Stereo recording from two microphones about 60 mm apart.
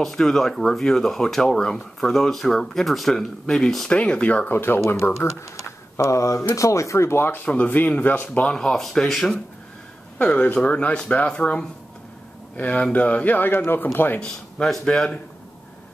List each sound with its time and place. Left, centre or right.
0.0 s speech: centre
4.0 s speech: left
4.5 s speech: left
5.9 s a sound: left
6.5 s speech: left
7.4 s speech: left
8.5 s speech: centre
10.1 s speech: left
14.2 s speech: centre